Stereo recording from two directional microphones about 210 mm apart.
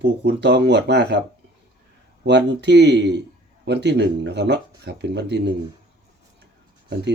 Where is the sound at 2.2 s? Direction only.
55° right (ahead or behind).